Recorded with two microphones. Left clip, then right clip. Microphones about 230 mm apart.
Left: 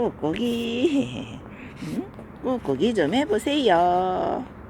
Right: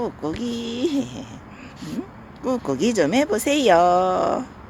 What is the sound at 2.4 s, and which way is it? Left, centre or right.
A woman's voice, centre.